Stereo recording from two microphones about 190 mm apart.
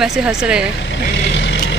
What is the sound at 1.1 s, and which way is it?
Vehicle, 75° left (ahead or behind).